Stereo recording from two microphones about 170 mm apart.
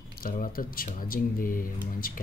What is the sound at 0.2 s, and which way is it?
Speech, 60° left (ahead or behind).